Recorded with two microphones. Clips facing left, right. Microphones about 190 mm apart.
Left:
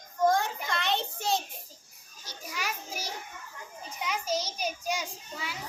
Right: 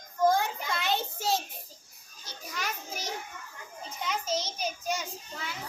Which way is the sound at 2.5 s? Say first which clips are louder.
Even; 10° left (ahead or behind).